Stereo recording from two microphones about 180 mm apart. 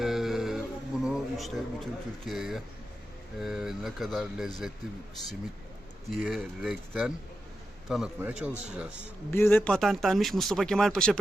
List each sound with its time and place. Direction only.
0.0 s a sound: centre (ahead or behind)
1.0 s speech: centre (ahead or behind)
9.3 s speech: 10° left (ahead or behind)